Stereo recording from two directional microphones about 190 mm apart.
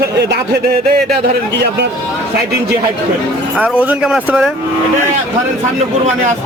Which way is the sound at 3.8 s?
5° right (ahead or behind).